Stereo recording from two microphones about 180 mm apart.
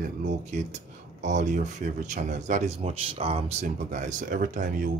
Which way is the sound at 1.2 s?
40° right (ahead or behind).